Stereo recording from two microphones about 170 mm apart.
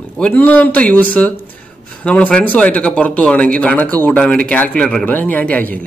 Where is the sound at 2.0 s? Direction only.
5° left (ahead or behind).